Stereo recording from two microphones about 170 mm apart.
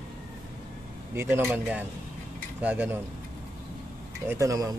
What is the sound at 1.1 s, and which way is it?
Speech, 15° right (ahead or behind).